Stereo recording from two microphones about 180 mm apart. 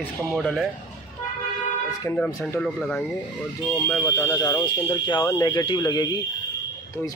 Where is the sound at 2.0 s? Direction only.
10° left (ahead or behind).